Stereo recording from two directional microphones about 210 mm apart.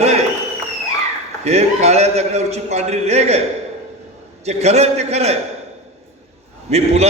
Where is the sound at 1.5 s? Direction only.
30° right (ahead or behind).